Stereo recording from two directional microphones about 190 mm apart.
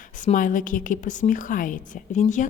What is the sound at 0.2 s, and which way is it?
A woman's voice, 45° left (ahead or behind).